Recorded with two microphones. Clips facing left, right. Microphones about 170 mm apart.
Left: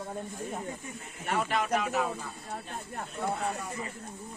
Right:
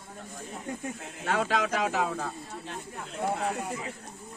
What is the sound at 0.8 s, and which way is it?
Speech, 85° right.